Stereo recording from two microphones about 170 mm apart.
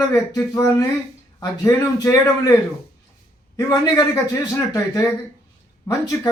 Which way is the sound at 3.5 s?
20° left (ahead or behind).